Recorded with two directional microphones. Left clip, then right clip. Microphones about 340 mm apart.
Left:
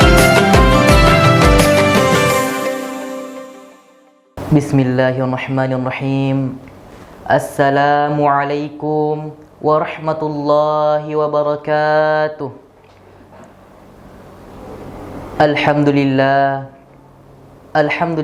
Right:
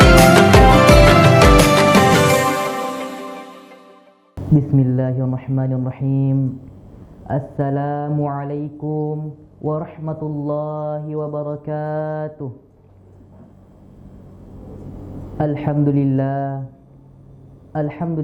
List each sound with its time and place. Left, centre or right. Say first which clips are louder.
0.0 s music: even; centre
4.4 s speech: left 4 dB; centre
8.8 s mantra: left 8 dB; centre
9.1 s speech: left 7 dB; centre
10.2 s speech: left 7 dB; centre
10.5 s speech: left 12 dB; centre
14.6 s speech: left 7 dB; centre
17.7 s speech: left 10 dB; centre